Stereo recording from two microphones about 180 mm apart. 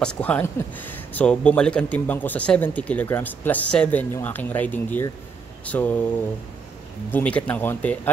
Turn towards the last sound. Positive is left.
turn(degrees=10)  # may be behind; listen again after turning